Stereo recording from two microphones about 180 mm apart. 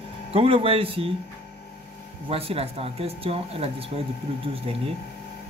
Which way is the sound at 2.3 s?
30° right (ahead or behind).